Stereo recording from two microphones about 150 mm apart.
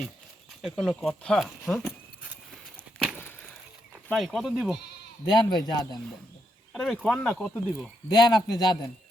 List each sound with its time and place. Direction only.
0.6 s speech: 5° left (ahead or behind)
4.1 s speech: centre (ahead or behind)
5.3 s speech: 25° left (ahead or behind)
6.7 s speech: 5° left (ahead or behind)
8.1 s speech: 25° left (ahead or behind)